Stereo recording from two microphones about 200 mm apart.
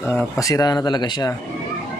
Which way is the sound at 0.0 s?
10° left (ahead or behind).